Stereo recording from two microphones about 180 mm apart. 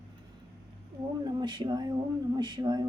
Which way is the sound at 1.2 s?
25° right (ahead or behind).